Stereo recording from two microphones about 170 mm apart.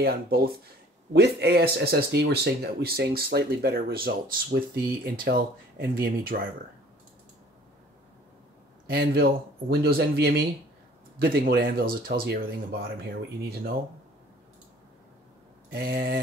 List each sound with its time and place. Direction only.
0.0 s speech: 65° right (ahead or behind)
8.9 s speech: 65° right (ahead or behind)
15.7 s speech: 65° right (ahead or behind)